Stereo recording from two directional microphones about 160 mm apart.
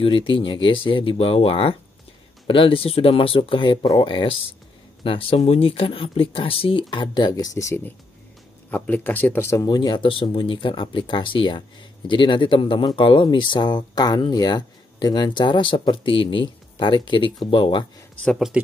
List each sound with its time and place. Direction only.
0.0 s speech: 30° left (ahead or behind)
18.2 s speech: 5° left (ahead or behind)